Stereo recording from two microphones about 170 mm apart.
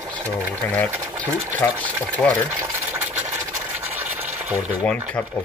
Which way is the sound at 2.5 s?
20° right (ahead or behind).